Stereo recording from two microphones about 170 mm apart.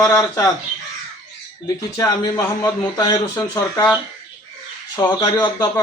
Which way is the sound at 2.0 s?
25° left (ahead or behind).